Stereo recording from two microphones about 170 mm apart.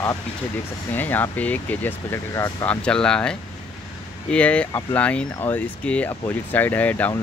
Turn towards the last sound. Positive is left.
turn(degrees=10)  # may be behind; listen again after turning